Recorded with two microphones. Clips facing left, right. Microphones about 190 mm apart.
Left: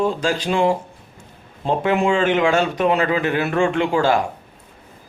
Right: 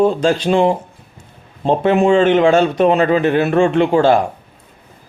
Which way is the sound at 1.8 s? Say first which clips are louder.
Right 6 dB; 30° right (ahead or behind).